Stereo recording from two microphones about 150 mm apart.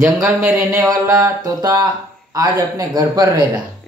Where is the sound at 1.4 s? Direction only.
25° right (ahead or behind).